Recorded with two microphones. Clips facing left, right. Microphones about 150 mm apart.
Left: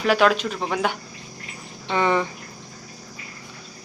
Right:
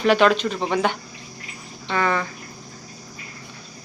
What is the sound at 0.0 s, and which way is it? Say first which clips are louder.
Speech: right 2 dB; 5° left (ahead or behind).